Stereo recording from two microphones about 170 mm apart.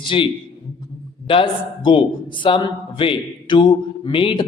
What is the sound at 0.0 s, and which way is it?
Speech, 30° left (ahead or behind).